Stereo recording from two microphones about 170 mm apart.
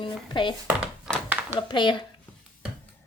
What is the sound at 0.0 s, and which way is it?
Speech, 30° left (ahead or behind).